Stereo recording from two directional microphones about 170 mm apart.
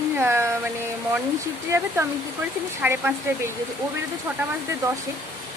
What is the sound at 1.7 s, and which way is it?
Speech, 15° right (ahead or behind).